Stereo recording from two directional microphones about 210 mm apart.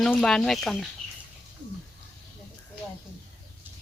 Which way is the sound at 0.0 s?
Centre (ahead or behind).